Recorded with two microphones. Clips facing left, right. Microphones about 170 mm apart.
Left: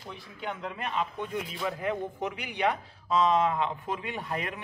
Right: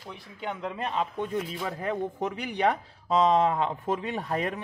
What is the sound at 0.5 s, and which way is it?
A man's voice, 30° right (ahead or behind).